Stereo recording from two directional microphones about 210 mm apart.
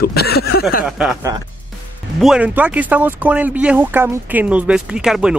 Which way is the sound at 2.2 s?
5° right (ahead or behind).